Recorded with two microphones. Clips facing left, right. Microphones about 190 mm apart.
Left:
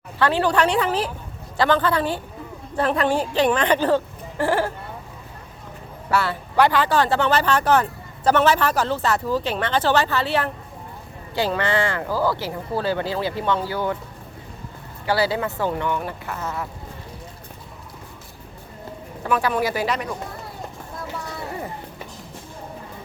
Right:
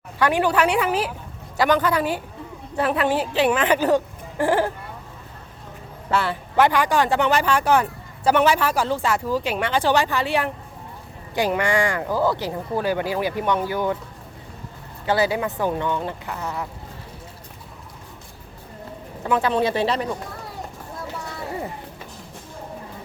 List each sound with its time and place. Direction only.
0.2 s speech: 15° right (ahead or behind)
6.1 s speech: 20° right (ahead or behind)
15.0 s speech: 20° right (ahead or behind)
19.2 s speech: 20° right (ahead or behind)